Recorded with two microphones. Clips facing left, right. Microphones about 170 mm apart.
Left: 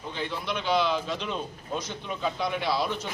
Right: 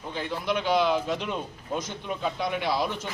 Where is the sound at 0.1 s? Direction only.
10° right (ahead or behind).